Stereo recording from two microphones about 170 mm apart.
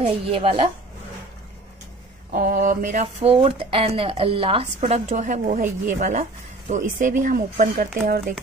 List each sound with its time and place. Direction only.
0.0 s a woman's voice: 35° right (ahead or behind)
2.3 s a woman's voice: 55° right (ahead or behind)